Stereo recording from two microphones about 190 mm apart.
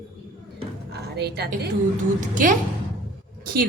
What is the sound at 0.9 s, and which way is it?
Speech, 60° right (ahead or behind).